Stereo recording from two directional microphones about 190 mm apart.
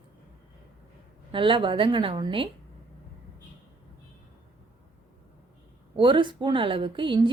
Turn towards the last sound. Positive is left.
turn(degrees=-25)  # may be behind; listen again after turning